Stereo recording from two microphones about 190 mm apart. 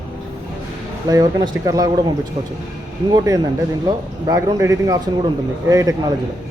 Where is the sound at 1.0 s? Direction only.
20° right (ahead or behind).